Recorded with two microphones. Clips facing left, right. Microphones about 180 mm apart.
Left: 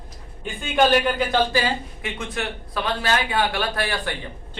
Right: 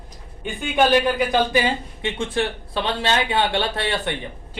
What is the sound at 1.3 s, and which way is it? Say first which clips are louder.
Speech: right 2 dB; 20° right (ahead or behind).